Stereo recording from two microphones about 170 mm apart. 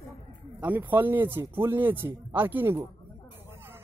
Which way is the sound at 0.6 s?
10° right (ahead or behind).